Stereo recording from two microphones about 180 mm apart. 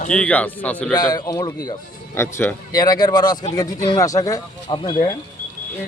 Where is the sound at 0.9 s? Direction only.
20° left (ahead or behind).